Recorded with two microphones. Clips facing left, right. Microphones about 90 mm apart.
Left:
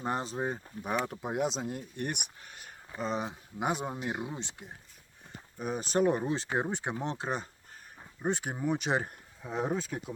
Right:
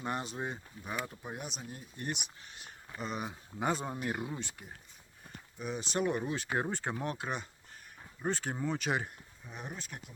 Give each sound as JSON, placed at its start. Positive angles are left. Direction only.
{"t": 0.0, "sound": "speech", "side_deg": 30}
{"t": 1.0, "sound": "speech", "side_deg": 90}
{"t": 3.0, "sound": "speech", "side_deg": 30}
{"t": 5.5, "sound": "speech", "side_deg": 40}
{"t": 8.2, "sound": "speech", "side_deg": 15}
{"t": 9.4, "sound": "speech", "side_deg": 90}